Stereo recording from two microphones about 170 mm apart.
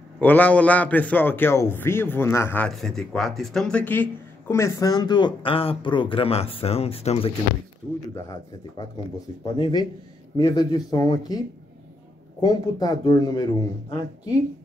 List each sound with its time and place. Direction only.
0.2 s a man's voice: 10° left (ahead or behind); by 7.3 s 35° left (ahead or behind)
8.1 s speech: 20° left (ahead or behind)